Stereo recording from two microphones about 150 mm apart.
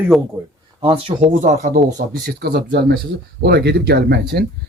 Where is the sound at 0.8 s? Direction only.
40° right (ahead or behind).